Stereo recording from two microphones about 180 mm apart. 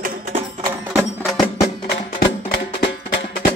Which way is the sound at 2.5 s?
75° left (ahead or behind).